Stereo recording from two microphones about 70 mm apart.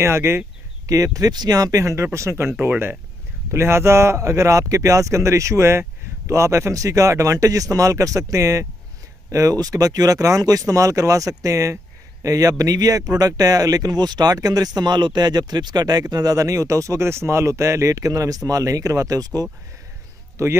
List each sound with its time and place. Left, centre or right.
0.0 s speech: right
0.8 s speech: right
2.1 s speech: right
2.5 s speech: right
20.4 s speech: right